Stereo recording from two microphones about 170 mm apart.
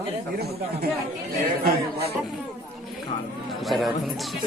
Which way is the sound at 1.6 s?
70° right (ahead or behind).